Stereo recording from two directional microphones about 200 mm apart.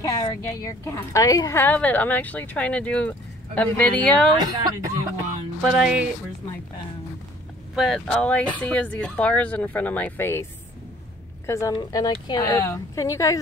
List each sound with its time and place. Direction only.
0.0 s a woman's voice: 15° left (ahead or behind)
4.4 s speech: 20° right (ahead or behind)
5.6 s music: 5° right (ahead or behind)
7.7 s a woman's voice: centre (ahead or behind)
11.4 s a woman's voice: 15° left (ahead or behind)